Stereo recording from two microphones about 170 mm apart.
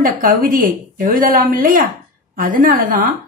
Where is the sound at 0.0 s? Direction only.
55° right (ahead or behind).